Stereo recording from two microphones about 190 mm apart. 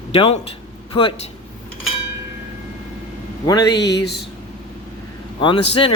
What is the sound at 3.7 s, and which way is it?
Speech, 60° left (ahead or behind).